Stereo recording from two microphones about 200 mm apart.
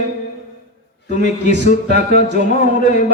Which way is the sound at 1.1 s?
40° left (ahead or behind).